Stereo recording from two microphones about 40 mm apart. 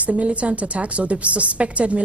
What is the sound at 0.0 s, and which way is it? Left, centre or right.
Speech, right.